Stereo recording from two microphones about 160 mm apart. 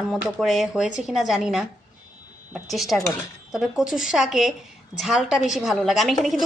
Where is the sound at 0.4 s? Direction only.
Centre (ahead or behind).